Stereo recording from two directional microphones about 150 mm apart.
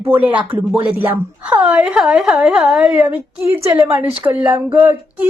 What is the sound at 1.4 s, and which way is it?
A woman's voice, 10° right (ahead or behind).